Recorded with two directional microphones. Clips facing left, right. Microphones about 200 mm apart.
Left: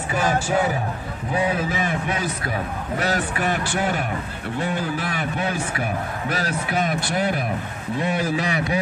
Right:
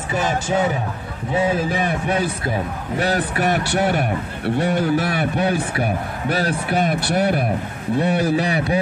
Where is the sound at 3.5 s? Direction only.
70° right (ahead or behind).